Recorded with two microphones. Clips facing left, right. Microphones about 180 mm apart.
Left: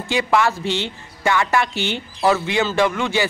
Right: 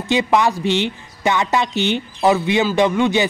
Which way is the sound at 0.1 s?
20° right (ahead or behind).